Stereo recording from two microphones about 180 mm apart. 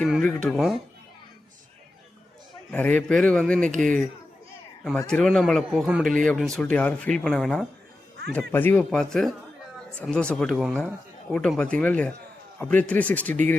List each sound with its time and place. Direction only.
0.0 s speech: 5° left (ahead or behind)
2.7 s speech: 10° left (ahead or behind)
4.8 s a man's voice: 5° left (ahead or behind)